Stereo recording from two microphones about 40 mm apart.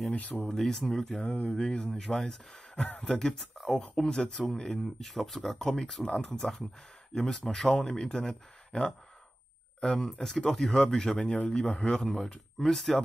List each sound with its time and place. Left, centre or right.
0.4 s speech: centre
1.2 s speech: left
1.5 s speech: centre
3.0 s speech: centre
3.7 s speech: centre
5.0 s speech: centre